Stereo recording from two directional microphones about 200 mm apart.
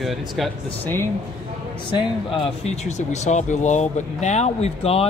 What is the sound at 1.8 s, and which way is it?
Speech, 30° left (ahead or behind).